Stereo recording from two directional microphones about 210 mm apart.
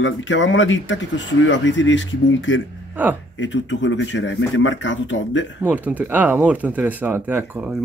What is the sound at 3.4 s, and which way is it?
Speech, 60° left (ahead or behind).